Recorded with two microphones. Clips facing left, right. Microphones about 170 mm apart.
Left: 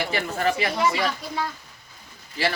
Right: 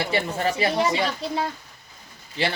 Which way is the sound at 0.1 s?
30° right (ahead or behind).